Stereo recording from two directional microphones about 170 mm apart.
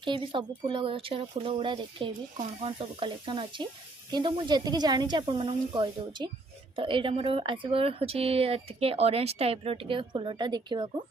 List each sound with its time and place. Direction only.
0.0 s speech: 30° right (ahead or behind)